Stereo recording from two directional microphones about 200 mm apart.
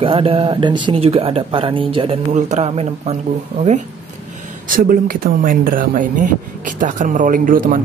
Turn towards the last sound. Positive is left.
turn(degrees=-45)  # may be behind; listen again after turning